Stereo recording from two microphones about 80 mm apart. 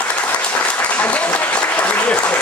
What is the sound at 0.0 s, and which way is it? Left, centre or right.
Applause, centre.